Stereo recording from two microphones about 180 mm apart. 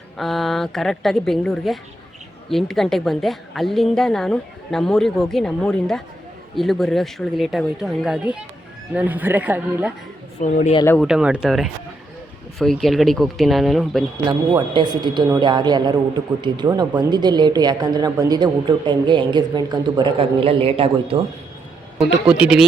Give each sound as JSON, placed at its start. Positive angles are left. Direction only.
{"t": 0.2, "sound": "a woman's voice", "side_deg": 0}
{"t": 10.4, "sound": "speech", "side_deg": 45}
{"t": 11.0, "sound": "a woman's voice", "side_deg": -5}
{"t": 14.3, "sound": "a woman's voice", "side_deg": -25}
{"t": 21.9, "sound": "a woman's voice", "side_deg": -5}